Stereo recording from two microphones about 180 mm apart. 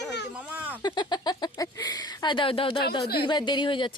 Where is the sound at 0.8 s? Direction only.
25° left (ahead or behind).